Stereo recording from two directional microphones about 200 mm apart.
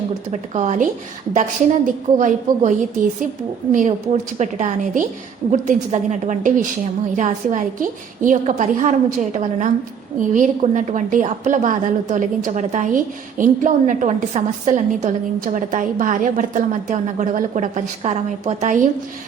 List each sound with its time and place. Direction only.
0.3 s a woman's voice: 35° right (ahead or behind)